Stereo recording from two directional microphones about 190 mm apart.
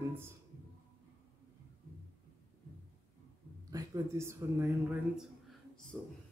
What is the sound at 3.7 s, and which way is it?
Speech, 15° right (ahead or behind).